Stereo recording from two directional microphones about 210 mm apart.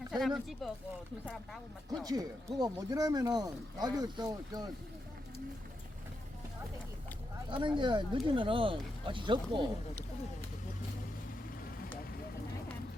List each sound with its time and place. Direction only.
0.1 s speech: centre (ahead or behind)
2.0 s speech: 15° right (ahead or behind)
7.5 s speech: 25° right (ahead or behind)